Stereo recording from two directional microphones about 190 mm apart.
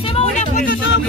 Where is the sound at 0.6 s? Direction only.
85° left.